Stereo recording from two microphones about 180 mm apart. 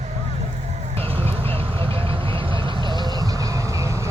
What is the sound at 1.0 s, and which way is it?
Vehicle, 30° right (ahead or behind).